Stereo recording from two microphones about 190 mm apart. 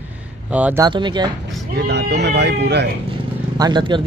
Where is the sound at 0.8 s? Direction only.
25° right (ahead or behind).